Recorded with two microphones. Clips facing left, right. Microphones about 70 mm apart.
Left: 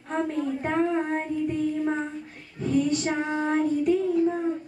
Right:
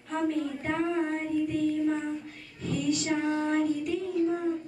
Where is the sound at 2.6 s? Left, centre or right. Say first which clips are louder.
Left 5 dB; left.